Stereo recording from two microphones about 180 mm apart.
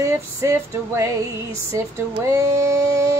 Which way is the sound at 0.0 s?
15° right (ahead or behind).